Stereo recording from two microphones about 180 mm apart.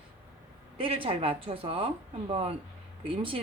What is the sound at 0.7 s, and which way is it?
Speech, 30° right (ahead or behind).